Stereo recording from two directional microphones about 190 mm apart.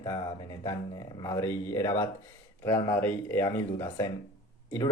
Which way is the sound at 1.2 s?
15° left (ahead or behind).